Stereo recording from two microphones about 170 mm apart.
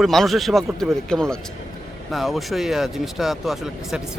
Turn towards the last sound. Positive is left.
turn(degrees=0)  # may be behind; listen again after turning